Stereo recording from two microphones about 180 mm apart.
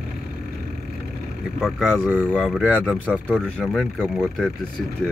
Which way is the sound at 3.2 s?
5° left (ahead or behind).